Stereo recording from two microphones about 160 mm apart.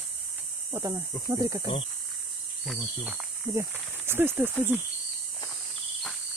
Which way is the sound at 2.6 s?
Centre (ahead or behind).